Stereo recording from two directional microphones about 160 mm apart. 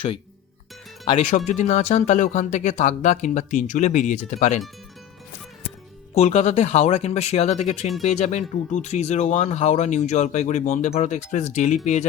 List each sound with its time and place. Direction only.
1.5 s speech: 50° left (ahead or behind)
6.1 s speech: 40° left (ahead or behind)